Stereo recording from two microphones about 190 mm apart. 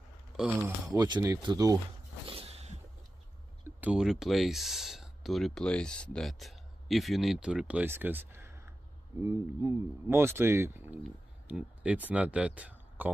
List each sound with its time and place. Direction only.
0.6 s speech: 20° right (ahead or behind)
2.2 s a sound: 30° right (ahead or behind)
3.6 s speech: 5° right (ahead or behind)